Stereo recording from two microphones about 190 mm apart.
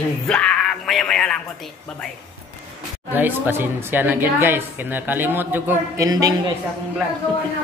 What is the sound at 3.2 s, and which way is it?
A woman's voice, 10° right (ahead or behind).